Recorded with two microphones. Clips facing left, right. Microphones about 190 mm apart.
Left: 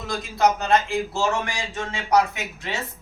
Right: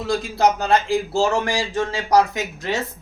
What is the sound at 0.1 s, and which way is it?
Speech, 30° right (ahead or behind).